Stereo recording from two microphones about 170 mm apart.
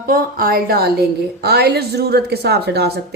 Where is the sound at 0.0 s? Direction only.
55° right (ahead or behind).